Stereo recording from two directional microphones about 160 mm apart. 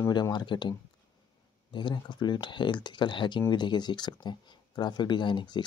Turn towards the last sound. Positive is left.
turn(degrees=30)  # may be behind; listen again after turning